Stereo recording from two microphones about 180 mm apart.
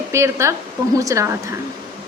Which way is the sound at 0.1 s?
15° right (ahead or behind).